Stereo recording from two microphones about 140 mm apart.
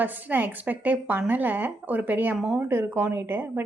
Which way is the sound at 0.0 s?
15° right (ahead or behind).